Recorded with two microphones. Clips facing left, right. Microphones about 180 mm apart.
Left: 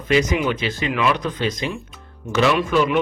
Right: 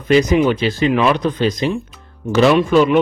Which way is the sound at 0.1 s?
35° right (ahead or behind).